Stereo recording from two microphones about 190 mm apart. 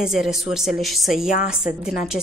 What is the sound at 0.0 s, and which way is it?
A woman's voice, centre (ahead or behind).